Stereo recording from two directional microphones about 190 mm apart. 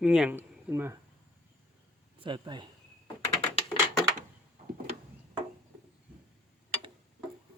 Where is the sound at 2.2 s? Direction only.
25° right (ahead or behind).